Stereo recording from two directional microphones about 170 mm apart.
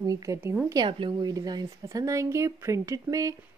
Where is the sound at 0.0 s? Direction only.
20° right (ahead or behind).